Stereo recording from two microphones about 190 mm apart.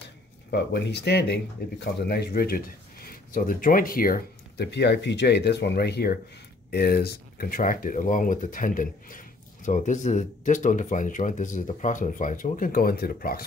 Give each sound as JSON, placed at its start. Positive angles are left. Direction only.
{"t": 0.5, "sound": "speech", "side_deg": 65}